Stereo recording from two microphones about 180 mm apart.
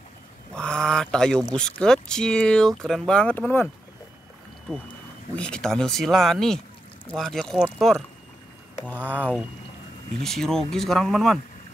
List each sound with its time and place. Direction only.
0.6 s speech: 5° left (ahead or behind)
5.3 s speech: 5° left (ahead or behind)
9.1 s speech: 10° left (ahead or behind)